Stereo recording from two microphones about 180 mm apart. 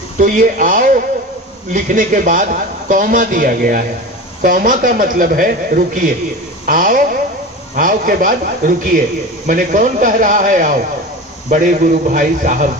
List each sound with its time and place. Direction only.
0.2 s a man's voice: 50° right (ahead or behind)